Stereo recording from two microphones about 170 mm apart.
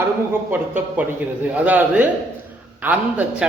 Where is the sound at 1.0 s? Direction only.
10° right (ahead or behind).